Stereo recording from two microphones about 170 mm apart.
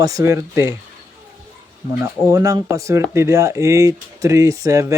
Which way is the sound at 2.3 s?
20° right (ahead or behind).